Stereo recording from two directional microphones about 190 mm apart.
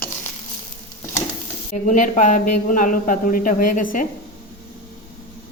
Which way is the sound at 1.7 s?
40° left (ahead or behind).